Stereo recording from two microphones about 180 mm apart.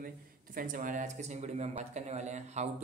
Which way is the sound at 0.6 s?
50° right (ahead or behind).